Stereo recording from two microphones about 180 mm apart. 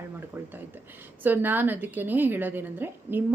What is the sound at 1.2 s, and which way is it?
A woman's voice, 10° right (ahead or behind).